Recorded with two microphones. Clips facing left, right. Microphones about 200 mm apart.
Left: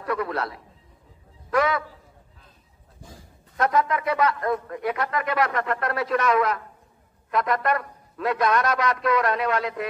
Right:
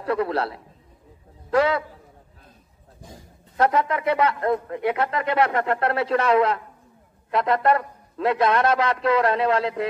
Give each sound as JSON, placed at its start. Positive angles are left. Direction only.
{"t": 0.0, "sound": "a man's voice", "side_deg": -30}
{"t": 3.5, "sound": "speech", "side_deg": -30}